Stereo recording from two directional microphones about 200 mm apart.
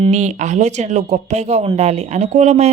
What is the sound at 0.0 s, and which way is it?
Speech, 35° right (ahead or behind).